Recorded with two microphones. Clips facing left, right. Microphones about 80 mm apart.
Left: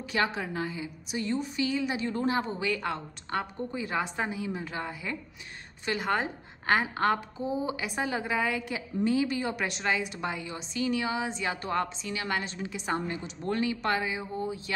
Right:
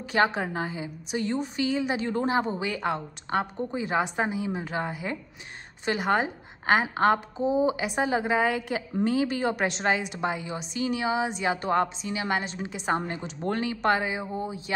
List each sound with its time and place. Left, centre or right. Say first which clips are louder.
0.1 s a woman's voice: right 5 dB; right